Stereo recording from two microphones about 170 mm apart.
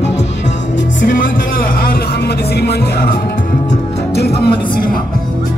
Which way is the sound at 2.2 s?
70° left (ahead or behind).